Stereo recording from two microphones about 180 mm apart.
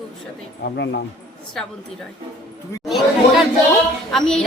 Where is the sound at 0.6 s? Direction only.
65° left (ahead or behind).